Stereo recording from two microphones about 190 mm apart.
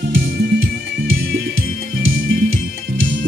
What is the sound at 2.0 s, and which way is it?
Music, 90° right.